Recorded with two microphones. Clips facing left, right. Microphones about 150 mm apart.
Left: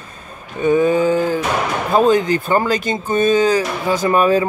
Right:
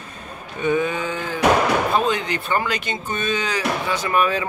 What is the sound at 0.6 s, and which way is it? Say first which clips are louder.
Speech: left 8 dB; 40° left (ahead or behind).